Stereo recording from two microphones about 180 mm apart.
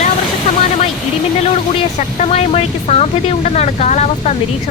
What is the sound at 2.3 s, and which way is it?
Speech, 35° left (ahead or behind).